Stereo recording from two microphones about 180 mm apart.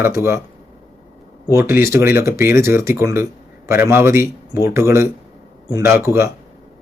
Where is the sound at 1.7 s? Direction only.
15° right (ahead or behind).